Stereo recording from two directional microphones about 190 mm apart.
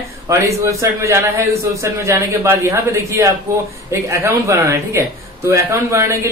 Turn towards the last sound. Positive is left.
turn(degrees=-15)  # may be behind; listen again after turning